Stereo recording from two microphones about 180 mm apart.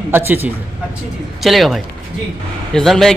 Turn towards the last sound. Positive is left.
turn(degrees=0)  # may be behind; listen again after turning